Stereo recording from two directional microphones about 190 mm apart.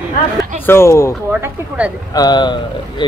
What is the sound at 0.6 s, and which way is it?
Speech, 15° left (ahead or behind).